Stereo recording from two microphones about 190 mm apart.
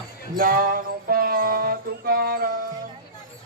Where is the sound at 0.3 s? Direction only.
50° right (ahead or behind).